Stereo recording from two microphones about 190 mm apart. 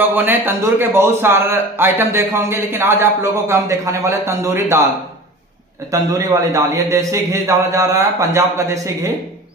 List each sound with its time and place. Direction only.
0.1 s a man's voice: 10° right (ahead or behind)
5.9 s a man's voice: 20° right (ahead or behind)